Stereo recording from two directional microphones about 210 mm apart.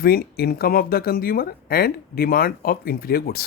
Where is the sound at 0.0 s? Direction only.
45° left (ahead or behind).